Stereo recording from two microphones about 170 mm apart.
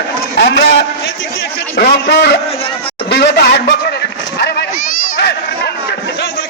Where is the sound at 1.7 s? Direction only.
80° left.